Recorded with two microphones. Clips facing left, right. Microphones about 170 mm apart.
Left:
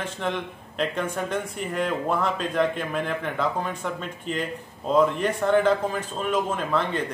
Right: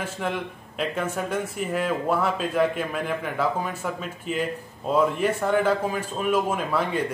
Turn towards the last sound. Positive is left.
turn(degrees=-10)  # may be behind; listen again after turning